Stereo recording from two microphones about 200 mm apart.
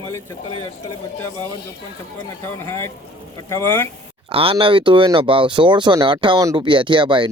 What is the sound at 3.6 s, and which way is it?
Speech, 10° left (ahead or behind).